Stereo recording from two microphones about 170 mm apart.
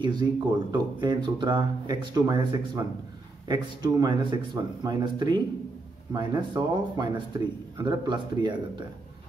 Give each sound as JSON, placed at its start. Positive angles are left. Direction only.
{"t": 0.0, "sound": "speech", "side_deg": -25}